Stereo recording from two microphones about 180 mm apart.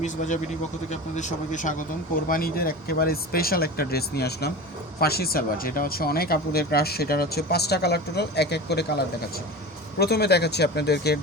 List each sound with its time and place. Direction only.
0.9 s speech: 40° left (ahead or behind); by 11.2 s 65° left (ahead or behind)